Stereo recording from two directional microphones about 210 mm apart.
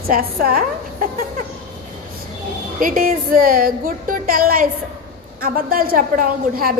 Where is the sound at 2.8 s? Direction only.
40° right (ahead or behind).